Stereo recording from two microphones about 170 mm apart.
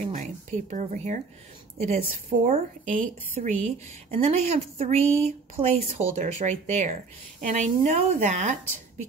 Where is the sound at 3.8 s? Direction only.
40° right (ahead or behind).